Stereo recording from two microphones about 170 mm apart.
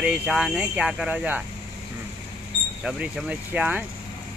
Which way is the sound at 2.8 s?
10° right (ahead or behind).